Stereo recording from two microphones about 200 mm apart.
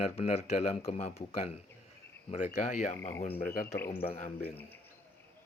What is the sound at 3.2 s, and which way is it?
Speech, 30° left (ahead or behind).